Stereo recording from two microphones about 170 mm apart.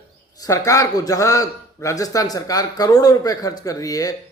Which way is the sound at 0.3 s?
20° left (ahead or behind).